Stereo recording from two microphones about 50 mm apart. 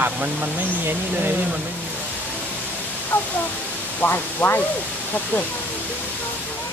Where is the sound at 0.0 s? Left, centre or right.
Right.